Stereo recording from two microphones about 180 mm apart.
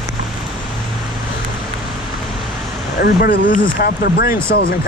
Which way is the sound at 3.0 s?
60° left (ahead or behind).